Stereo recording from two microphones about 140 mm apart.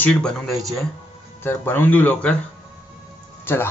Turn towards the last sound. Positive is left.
turn(degrees=15)  # may be behind; listen again after turning